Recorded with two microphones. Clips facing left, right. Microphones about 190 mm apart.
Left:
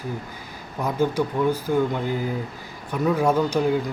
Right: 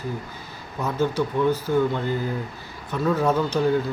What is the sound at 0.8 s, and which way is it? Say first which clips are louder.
A man's voice: left 1 dB; 15° left (ahead or behind).